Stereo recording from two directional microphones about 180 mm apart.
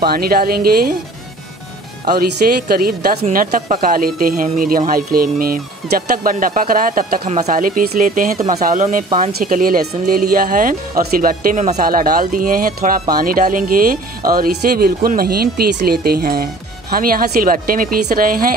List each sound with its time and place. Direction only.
0.0 s speech: 55° right (ahead or behind)
2.7 s speech: 55° right (ahead or behind)
3.3 s speech: 45° right (ahead or behind)
7.2 s speech: 40° right (ahead or behind)